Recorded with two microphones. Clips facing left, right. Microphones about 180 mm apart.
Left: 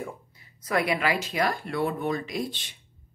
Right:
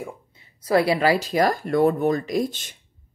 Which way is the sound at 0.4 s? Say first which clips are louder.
Right 7 dB; 30° right (ahead or behind).